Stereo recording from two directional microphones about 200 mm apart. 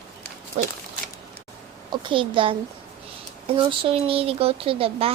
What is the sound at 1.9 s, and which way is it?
A woman's voice, 25° right (ahead or behind).